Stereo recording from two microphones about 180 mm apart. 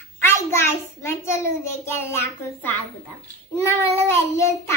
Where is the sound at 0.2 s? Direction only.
15° left (ahead or behind).